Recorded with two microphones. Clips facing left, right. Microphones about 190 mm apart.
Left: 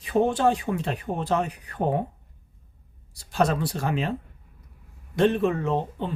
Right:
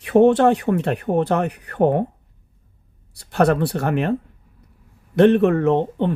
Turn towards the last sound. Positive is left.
turn(degrees=-65)  # may be behind; listen again after turning